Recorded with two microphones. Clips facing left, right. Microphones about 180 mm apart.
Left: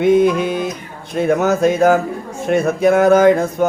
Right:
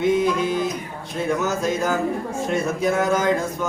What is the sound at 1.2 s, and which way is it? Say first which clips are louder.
Mantra: left 8 dB; 60° left (ahead or behind).